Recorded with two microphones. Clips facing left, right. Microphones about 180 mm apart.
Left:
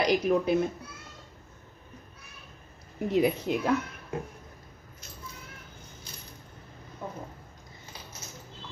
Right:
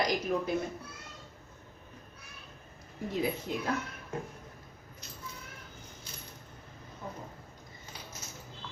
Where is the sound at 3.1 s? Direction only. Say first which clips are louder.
Left 8 dB; 75° left (ahead or behind).